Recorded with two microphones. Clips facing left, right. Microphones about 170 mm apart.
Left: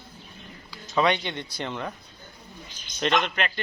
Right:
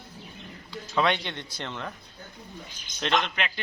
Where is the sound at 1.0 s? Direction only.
5° left (ahead or behind).